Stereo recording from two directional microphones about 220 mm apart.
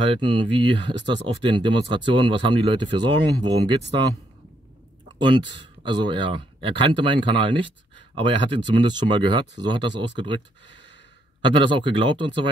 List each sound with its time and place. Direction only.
0.0 s speech: 20° right (ahead or behind)
5.2 s speech: 20° right (ahead or behind)
11.4 s speech: 20° right (ahead or behind)